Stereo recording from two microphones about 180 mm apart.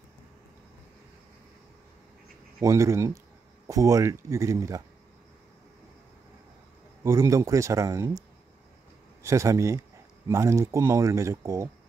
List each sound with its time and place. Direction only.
2.6 s speech: 15° right (ahead or behind)
7.0 s speech: 15° right (ahead or behind)
9.2 s speech: 15° right (ahead or behind)